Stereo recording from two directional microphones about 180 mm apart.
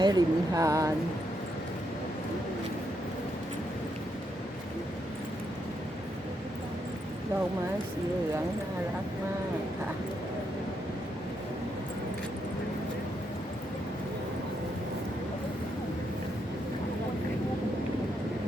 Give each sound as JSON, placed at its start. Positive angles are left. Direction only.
{"t": 0.0, "sound": "speech", "side_deg": -20}